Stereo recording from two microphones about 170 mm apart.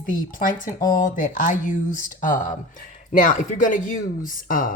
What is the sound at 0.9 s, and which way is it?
Speech, 50° left (ahead or behind).